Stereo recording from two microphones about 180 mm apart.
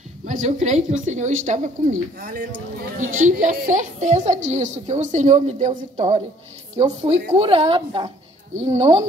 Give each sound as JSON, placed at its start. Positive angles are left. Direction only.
{"t": 0.3, "sound": "a woman's voice", "side_deg": -45}
{"t": 7.3, "sound": "a woman's voice", "side_deg": -35}